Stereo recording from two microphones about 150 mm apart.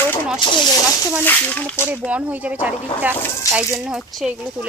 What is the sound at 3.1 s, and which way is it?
Speech, 15° left (ahead or behind).